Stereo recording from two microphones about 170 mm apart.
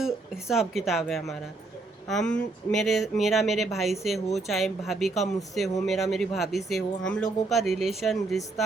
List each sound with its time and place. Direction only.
0.0 s speech: centre (ahead or behind)